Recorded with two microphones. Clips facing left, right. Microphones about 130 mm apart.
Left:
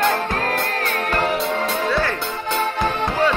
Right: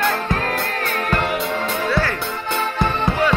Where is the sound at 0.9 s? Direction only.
40° left (ahead or behind).